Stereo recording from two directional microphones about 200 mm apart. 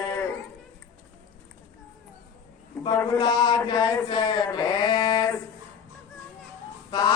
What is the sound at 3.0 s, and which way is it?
Mantra, 20° left (ahead or behind).